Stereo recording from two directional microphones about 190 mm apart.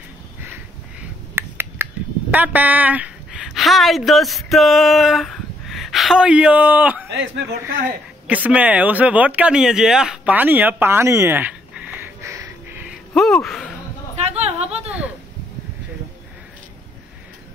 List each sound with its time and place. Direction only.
1.3 s finger snapping: 10° right (ahead or behind)
2.3 s speech: 10° right (ahead or behind)
7.1 s a man's voice: 65° right (ahead or behind)
8.3 s speech: 10° right (ahead or behind)
14.2 s a sound: 35° right (ahead or behind)
14.9 s a sound: 5° right (ahead or behind)